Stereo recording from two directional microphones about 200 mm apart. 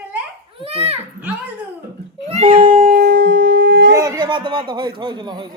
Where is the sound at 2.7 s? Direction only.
45° right (ahead or behind); by 3.9 s 60° right (ahead or behind).